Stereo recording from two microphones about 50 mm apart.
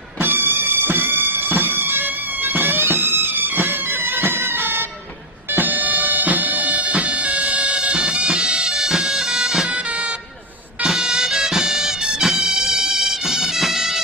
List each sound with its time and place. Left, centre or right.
0.2 s music: right; by 9.8 s centre
9.8 s music: right; by 14.0 s centre